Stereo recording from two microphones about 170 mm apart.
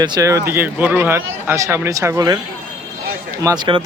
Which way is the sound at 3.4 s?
25° right (ahead or behind).